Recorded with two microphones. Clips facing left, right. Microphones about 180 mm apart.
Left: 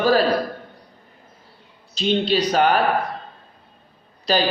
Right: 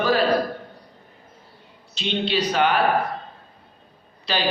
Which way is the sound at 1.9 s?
40° left (ahead or behind).